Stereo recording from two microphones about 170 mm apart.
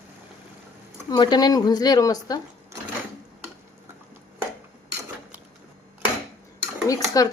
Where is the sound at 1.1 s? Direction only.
25° left (ahead or behind).